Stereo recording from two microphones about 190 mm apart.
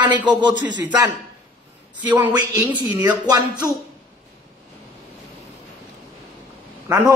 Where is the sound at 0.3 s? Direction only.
25° right (ahead or behind).